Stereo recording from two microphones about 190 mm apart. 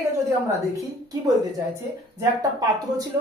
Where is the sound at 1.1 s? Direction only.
15° right (ahead or behind).